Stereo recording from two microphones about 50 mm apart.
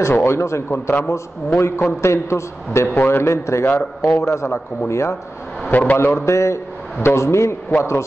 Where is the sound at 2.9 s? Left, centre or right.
Left.